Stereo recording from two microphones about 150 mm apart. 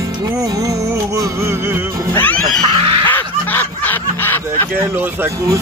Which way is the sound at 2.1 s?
10° left (ahead or behind).